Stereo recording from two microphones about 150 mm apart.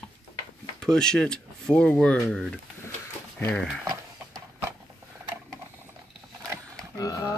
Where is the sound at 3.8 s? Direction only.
20° right (ahead or behind).